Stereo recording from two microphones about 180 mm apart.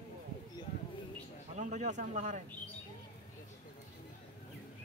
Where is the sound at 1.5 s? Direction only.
40° right (ahead or behind).